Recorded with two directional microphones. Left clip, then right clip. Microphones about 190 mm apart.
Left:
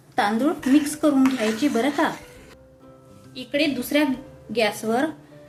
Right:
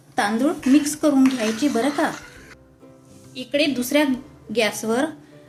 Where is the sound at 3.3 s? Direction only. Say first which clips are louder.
Right 2 dB; 10° right (ahead or behind).